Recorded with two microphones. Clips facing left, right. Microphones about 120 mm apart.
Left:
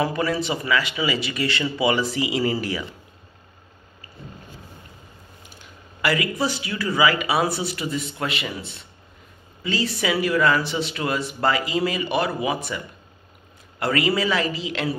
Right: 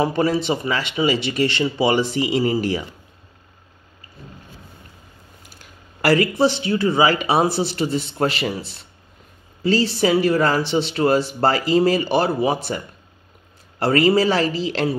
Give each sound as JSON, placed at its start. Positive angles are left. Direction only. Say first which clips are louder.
{"t": 0.0, "sound": "speech", "louder": "right 4 dB", "side_deg": -30}
{"t": 5.9, "sound": "a sound", "louder": "right 6 dB", "side_deg": -40}
{"t": 6.3, "sound": "speech", "louder": "right 7 dB", "side_deg": -30}